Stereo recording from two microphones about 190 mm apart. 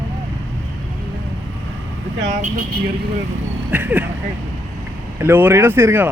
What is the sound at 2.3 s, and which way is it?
Speech, 40° right (ahead or behind).